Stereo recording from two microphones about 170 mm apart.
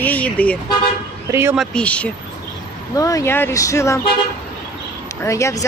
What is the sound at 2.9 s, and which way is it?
Speech, 20° left (ahead or behind).